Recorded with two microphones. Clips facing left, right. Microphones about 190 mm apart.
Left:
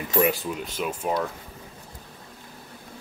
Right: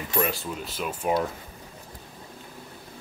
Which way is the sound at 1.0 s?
Centre (ahead or behind).